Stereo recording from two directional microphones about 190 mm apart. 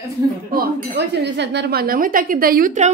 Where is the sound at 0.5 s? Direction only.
55° right (ahead or behind).